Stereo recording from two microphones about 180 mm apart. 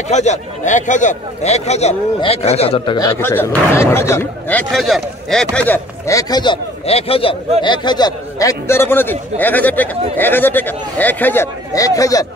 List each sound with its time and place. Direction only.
0.1 s a man's voice: 40° left (ahead or behind)
3.0 s a man's voice: 15° left (ahead or behind)